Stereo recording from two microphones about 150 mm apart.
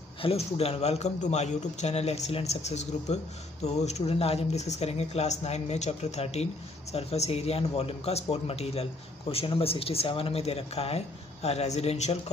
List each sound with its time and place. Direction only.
0.2 s speech: 40° left (ahead or behind)